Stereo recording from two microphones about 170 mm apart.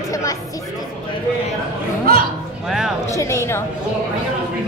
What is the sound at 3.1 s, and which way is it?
Speech, 15° left (ahead or behind).